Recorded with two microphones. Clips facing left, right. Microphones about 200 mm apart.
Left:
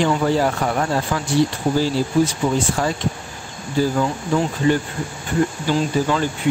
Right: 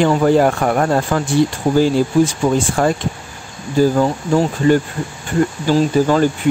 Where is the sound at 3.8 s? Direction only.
45° right (ahead or behind).